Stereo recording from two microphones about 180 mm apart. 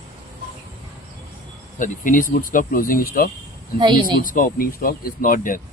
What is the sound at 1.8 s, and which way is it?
Speech, 50° left (ahead or behind).